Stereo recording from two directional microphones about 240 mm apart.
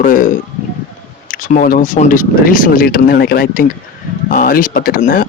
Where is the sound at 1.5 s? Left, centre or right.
Left.